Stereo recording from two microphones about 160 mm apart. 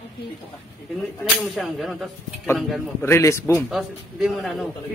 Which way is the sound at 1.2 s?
Centre (ahead or behind).